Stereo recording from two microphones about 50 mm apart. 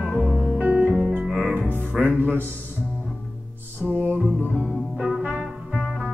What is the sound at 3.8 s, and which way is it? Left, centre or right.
Music, right.